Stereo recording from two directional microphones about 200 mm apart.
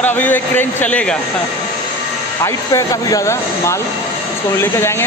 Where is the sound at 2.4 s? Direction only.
15° left (ahead or behind).